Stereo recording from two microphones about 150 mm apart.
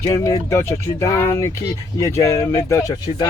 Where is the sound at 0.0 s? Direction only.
20° left (ahead or behind).